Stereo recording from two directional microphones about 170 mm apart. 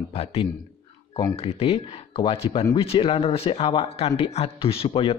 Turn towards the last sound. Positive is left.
turn(degrees=35)  # may be behind; listen again after turning